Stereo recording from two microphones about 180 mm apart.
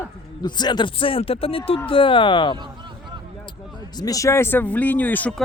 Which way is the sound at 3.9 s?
20° left (ahead or behind).